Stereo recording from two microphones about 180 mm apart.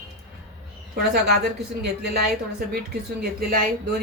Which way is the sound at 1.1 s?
65° right (ahead or behind).